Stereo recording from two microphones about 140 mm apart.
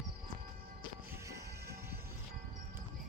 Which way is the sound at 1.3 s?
20° right (ahead or behind).